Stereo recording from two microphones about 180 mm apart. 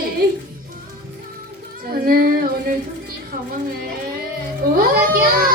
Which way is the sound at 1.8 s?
55° right (ahead or behind).